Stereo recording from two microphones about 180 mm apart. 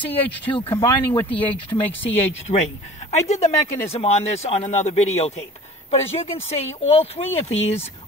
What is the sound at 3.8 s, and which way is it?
Speech, 35° left (ahead or behind).